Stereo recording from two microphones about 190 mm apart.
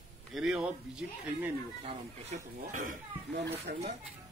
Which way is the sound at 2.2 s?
45° right (ahead or behind).